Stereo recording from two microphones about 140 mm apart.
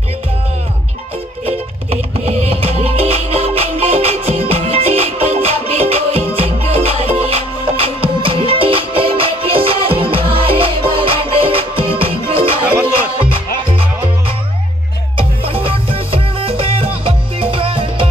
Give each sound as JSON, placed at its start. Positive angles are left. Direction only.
{"t": 1.4, "sound": "music", "side_deg": -45}